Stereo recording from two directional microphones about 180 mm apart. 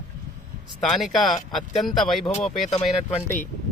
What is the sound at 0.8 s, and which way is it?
Speech, centre (ahead or behind).